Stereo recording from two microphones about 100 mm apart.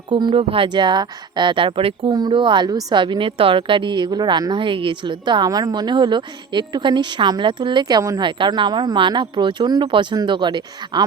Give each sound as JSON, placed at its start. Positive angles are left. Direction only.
{"t": 0.1, "sound": "speech", "side_deg": -55}
{"t": 2.1, "sound": "a woman's voice", "side_deg": -50}